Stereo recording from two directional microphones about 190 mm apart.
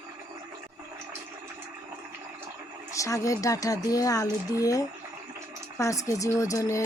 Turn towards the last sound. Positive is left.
turn(degrees=15)  # may be behind; listen again after turning